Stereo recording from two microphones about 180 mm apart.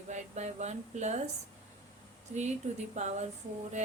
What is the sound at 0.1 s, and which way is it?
A woman's voice, 40° right (ahead or behind).